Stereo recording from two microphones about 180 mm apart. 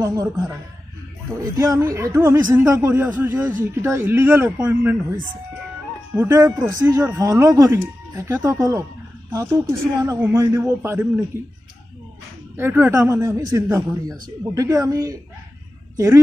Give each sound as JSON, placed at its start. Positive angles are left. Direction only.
{"t": 0.0, "sound": "speech", "side_deg": -20}
{"t": 1.6, "sound": "speech", "side_deg": -20}
{"t": 6.1, "sound": "speech", "side_deg": -15}
{"t": 12.5, "sound": "speech", "side_deg": -10}